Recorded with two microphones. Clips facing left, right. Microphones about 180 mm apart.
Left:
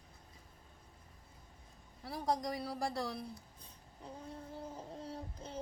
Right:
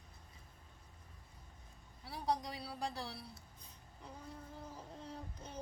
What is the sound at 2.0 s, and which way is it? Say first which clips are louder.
Speech: left 3 dB; 45° left (ahead or behind).